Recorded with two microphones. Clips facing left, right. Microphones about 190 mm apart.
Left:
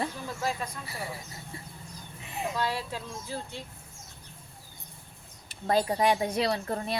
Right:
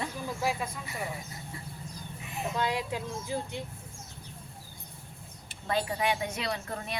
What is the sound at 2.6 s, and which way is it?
Speech, 15° right (ahead or behind).